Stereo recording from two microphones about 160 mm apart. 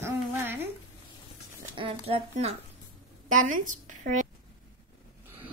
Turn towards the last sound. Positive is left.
turn(degrees=-55)  # may be behind; listen again after turning